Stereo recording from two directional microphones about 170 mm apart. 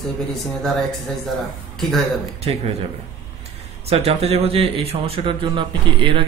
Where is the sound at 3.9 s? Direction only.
35° right (ahead or behind).